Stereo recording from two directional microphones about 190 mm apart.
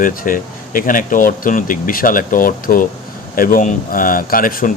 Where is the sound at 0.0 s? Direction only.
45° left (ahead or behind).